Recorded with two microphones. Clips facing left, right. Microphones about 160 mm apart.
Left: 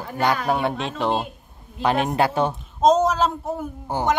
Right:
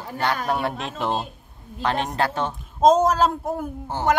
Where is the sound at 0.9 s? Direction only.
5° right (ahead or behind).